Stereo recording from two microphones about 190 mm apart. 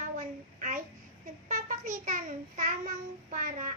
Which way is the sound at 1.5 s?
40° right (ahead or behind).